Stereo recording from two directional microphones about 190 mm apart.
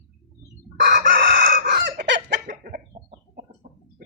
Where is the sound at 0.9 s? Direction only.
50° right (ahead or behind); by 2.6 s 70° right (ahead or behind).